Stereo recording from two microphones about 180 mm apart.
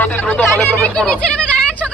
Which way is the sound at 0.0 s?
10° left (ahead or behind).